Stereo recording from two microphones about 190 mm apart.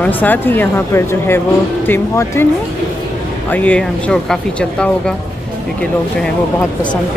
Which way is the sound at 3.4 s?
10° left (ahead or behind).